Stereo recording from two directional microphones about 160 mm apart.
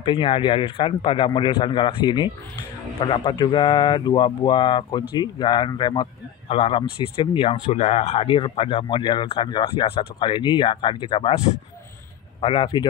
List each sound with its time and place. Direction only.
0.0 s speech: 35° left (ahead or behind)